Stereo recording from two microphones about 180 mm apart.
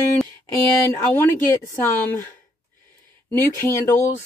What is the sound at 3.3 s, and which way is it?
Speech, 15° left (ahead or behind).